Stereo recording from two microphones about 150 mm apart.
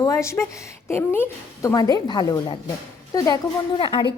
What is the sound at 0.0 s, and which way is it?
A woman's voice, 20° left (ahead or behind).